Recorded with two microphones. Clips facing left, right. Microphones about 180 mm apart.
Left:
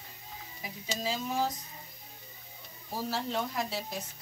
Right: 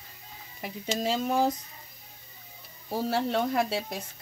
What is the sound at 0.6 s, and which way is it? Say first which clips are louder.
Speech: right 6 dB; 60° right (ahead or behind).